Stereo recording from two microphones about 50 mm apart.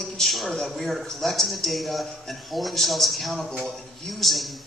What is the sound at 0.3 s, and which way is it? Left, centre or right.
A woman's voice, centre.